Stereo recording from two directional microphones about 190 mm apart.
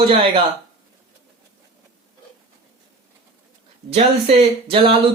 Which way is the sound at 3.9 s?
35° right (ahead or behind).